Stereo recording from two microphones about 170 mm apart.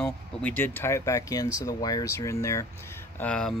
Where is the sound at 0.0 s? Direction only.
10° left (ahead or behind).